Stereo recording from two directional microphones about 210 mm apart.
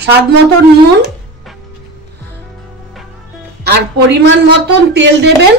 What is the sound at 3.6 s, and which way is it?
A woman's voice, 50° right (ahead or behind).